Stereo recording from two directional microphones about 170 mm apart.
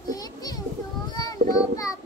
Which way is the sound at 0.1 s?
20° left (ahead or behind).